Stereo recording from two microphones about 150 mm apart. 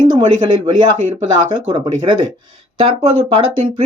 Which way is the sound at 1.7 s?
30° right (ahead or behind).